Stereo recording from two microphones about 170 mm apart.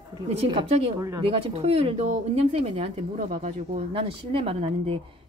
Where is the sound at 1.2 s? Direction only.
35° right (ahead or behind).